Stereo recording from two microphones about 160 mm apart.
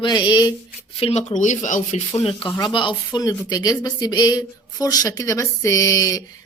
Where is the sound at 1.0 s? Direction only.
40° left (ahead or behind).